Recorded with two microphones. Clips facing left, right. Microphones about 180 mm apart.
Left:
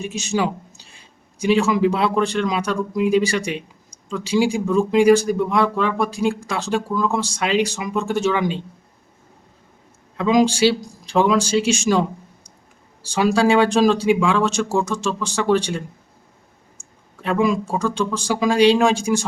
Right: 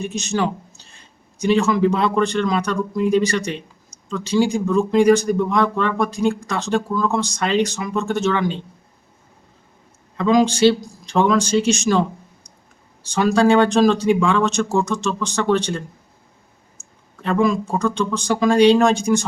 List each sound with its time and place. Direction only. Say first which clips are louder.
0.0 s speech: even; 10° left (ahead or behind)
10.2 s speech: right 1 dB; 10° left (ahead or behind)
16.8 s clicking: left 1 dB; 30° left (ahead or behind)
17.2 s speech: right 1 dB; 10° left (ahead or behind)